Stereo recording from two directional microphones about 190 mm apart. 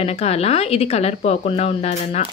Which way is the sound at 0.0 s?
35° left (ahead or behind).